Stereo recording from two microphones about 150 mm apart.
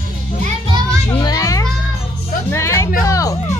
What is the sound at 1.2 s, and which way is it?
Children playing, 25° left (ahead or behind).